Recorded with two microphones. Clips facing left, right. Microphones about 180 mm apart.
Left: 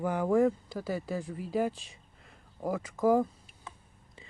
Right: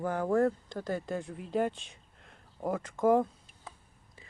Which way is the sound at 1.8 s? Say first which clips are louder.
Even; centre (ahead or behind).